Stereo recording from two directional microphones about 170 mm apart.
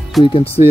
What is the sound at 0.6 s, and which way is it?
Speech, 35° left (ahead or behind).